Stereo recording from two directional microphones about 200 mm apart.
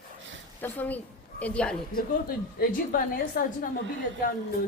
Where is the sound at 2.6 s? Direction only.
45° left (ahead or behind).